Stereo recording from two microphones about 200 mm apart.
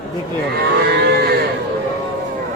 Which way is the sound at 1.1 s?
50° right (ahead or behind).